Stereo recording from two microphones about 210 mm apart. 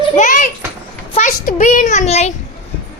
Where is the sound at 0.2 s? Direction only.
35° left (ahead or behind).